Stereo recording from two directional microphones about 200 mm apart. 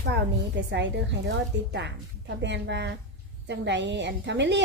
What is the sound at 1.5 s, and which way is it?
A woman's voice, 60° right (ahead or behind).